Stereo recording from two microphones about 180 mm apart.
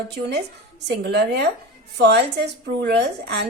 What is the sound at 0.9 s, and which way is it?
A woman's voice, 65° right (ahead or behind).